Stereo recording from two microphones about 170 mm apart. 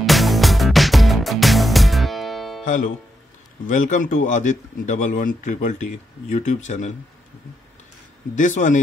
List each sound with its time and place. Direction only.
0.0 s music: centre (ahead or behind)
2.6 s speech: 45° left (ahead or behind)
8.4 s speech: 50° left (ahead or behind)